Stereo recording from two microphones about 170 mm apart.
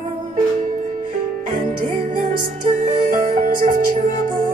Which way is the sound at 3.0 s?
55° right (ahead or behind).